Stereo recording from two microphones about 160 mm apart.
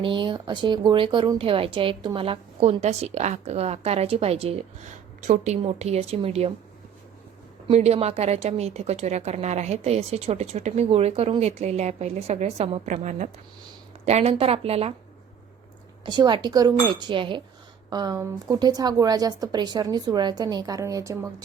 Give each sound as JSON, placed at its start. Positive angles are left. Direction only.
{"t": 0.0, "sound": "speech", "side_deg": -30}
{"t": 7.7, "sound": "a woman's voice", "side_deg": -40}
{"t": 16.0, "sound": "a woman's voice", "side_deg": -30}